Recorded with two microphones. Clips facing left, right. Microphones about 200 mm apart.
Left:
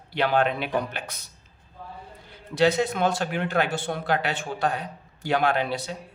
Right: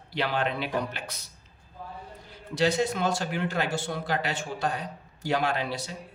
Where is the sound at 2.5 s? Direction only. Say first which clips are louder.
Left 3 dB; 60° left (ahead or behind).